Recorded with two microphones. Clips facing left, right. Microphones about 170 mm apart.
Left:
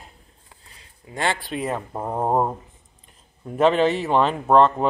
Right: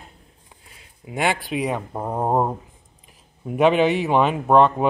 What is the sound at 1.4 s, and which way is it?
Speech, centre (ahead or behind).